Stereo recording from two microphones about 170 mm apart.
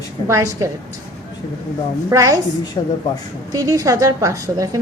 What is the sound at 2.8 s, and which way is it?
Speech, 25° left (ahead or behind).